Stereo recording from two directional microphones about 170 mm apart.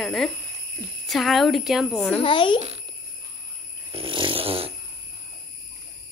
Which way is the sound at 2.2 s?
30° left (ahead or behind).